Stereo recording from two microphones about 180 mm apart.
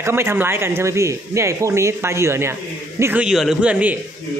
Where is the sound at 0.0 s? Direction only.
15° right (ahead or behind).